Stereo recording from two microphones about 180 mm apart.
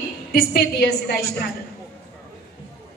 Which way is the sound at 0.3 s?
55° left (ahead or behind).